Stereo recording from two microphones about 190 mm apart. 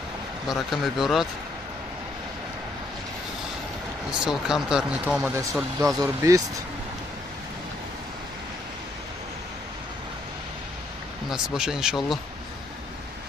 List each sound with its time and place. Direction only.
0.5 s speech: centre (ahead or behind)
4.1 s speech: 5° right (ahead or behind)
11.2 s speech: 5° right (ahead or behind)